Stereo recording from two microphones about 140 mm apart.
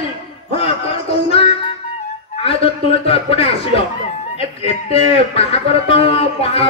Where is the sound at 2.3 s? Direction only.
45° left (ahead or behind).